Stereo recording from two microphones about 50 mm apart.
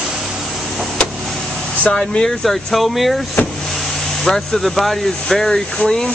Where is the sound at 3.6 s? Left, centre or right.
Centre.